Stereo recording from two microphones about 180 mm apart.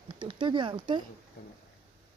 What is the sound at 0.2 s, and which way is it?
Speech, 25° right (ahead or behind).